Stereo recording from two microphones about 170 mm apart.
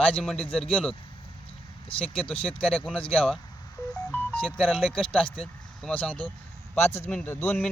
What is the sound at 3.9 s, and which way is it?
Music, 10° left (ahead or behind).